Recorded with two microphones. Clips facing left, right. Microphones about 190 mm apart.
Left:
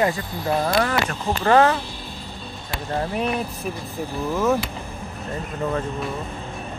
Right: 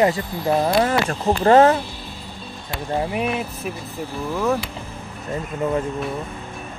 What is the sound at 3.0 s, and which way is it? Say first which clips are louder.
Speech: right 1 dB; 10° right (ahead or behind).